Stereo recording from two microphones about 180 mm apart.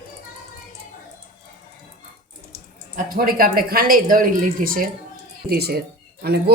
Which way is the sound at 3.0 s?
50° right (ahead or behind).